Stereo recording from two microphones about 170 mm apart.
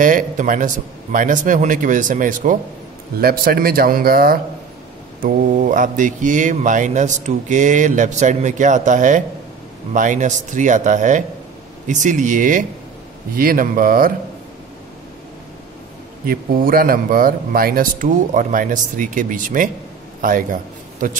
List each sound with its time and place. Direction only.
0.0 s speech: 50° right (ahead or behind)
16.3 s a man's voice: 55° right (ahead or behind)